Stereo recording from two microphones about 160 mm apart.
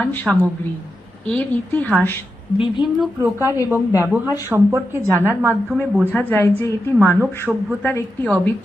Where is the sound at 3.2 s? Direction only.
15° right (ahead or behind).